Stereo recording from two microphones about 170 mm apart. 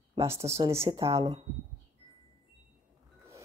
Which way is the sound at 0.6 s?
20° right (ahead or behind).